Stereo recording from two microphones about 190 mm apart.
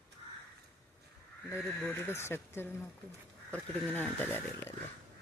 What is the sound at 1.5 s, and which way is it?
Speech, 15° left (ahead or behind).